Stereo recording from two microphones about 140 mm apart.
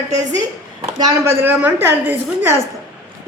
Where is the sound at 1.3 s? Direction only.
15° right (ahead or behind).